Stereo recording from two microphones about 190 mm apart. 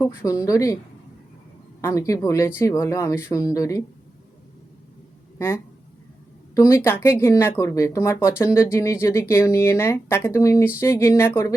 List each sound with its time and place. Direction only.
0.0 s speech: 15° left (ahead or behind)
1.8 s speech: 15° left (ahead or behind)
6.5 s speech: 15° left (ahead or behind)